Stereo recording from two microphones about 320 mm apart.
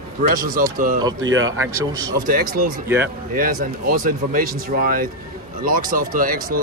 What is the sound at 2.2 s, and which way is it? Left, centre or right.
Speech, right.